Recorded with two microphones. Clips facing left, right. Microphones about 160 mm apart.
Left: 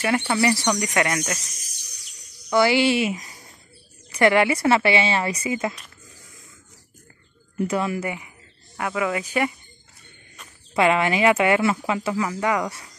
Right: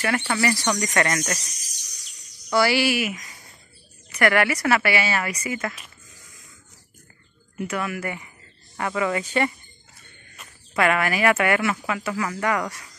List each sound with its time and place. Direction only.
0.0 s speech: 10° left (ahead or behind)
2.5 s speech: 20° left (ahead or behind)
7.7 s speech: 25° left (ahead or behind)
8.7 s speech: 5° left (ahead or behind)
10.8 s speech: 20° left (ahead or behind)